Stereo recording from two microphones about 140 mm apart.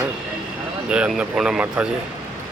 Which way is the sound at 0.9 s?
5° right (ahead or behind).